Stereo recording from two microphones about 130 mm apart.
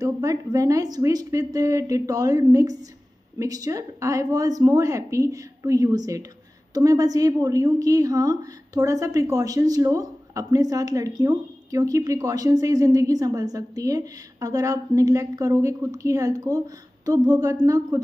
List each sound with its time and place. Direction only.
0.0 s a woman's voice: 25° right (ahead or behind)